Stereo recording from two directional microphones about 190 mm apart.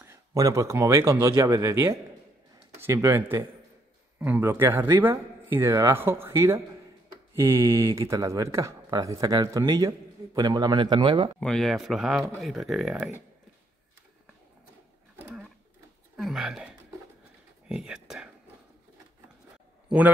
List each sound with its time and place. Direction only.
0.0 s speech: 15° right (ahead or behind)
11.3 s speech: 5° left (ahead or behind)
15.2 s sewing machine: 5° right (ahead or behind)
16.2 s speech: centre (ahead or behind)